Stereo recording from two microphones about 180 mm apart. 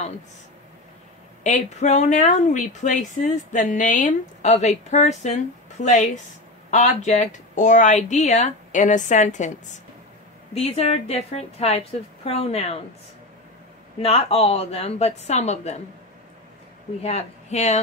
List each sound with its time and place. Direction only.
1.4 s a woman's voice: 40° left (ahead or behind)
13.9 s a woman's voice: 35° left (ahead or behind)
17.0 s a woman's voice: 35° left (ahead or behind)